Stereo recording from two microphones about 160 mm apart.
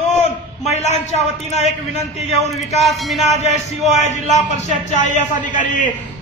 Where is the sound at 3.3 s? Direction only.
45° left (ahead or behind).